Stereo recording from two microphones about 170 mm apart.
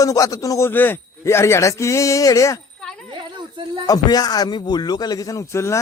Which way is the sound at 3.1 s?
30° right (ahead or behind).